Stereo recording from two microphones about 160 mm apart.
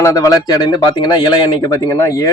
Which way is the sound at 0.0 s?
20° left (ahead or behind).